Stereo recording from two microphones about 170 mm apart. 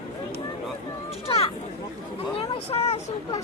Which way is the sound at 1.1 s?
35° left (ahead or behind).